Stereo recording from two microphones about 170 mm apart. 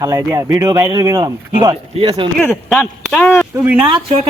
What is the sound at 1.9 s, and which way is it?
Speech, 35° right (ahead or behind).